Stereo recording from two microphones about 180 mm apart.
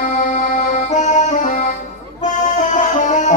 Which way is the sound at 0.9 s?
40° left (ahead or behind).